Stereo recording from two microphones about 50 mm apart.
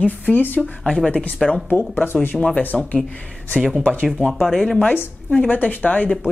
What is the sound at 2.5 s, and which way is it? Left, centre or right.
Speech, left.